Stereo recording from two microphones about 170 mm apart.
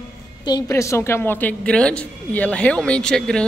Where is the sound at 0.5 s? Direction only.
20° left (ahead or behind).